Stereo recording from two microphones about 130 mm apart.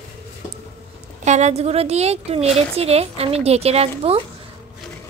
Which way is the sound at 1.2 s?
60° right (ahead or behind).